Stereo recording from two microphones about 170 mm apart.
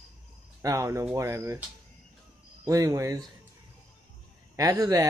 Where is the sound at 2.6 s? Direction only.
20° right (ahead or behind).